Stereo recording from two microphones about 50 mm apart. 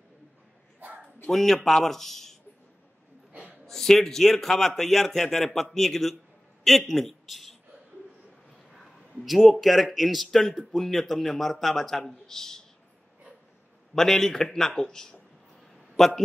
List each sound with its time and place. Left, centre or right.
0.7 s dog: right
1.3 s a man's voice: centre
3.6 s a man's voice: centre
9.2 s a man's voice: centre
13.9 s a man's voice: centre